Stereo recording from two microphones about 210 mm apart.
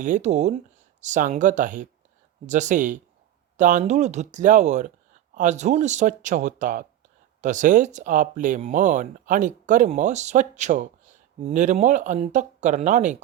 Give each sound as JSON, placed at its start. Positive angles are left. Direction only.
{"t": 0.0, "sound": "speech", "side_deg": -35}